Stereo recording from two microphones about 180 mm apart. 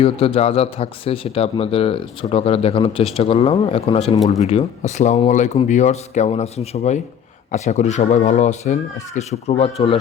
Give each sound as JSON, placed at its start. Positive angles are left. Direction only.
{"t": 0.0, "sound": "speech", "side_deg": 30}